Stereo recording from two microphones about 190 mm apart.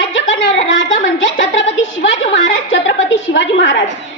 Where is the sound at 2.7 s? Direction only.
75° left (ahead or behind).